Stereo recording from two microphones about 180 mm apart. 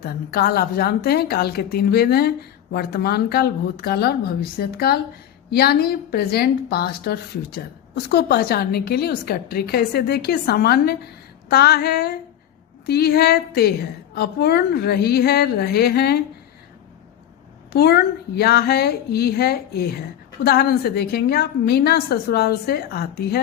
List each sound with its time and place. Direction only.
0.0 s a woman's voice: 60° left (ahead or behind)
17.7 s a woman's voice: 60° left (ahead or behind)